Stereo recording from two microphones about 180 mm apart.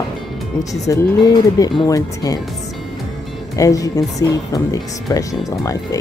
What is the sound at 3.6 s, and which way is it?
Speech, 20° left (ahead or behind).